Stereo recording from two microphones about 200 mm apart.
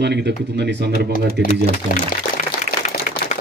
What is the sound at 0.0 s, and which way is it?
Speech, 55° right (ahead or behind).